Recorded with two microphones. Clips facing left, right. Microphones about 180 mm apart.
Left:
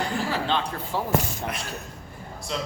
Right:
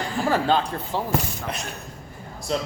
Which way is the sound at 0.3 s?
45° right (ahead or behind).